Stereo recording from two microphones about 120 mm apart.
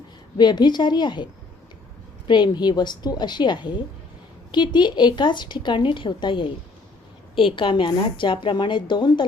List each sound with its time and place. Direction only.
0.3 s a woman's voice: 35° left (ahead or behind)